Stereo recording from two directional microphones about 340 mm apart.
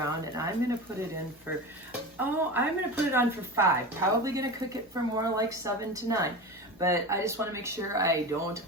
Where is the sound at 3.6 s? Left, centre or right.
Centre.